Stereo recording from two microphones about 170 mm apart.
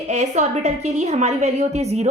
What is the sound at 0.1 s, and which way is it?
A woman's voice, 40° right (ahead or behind).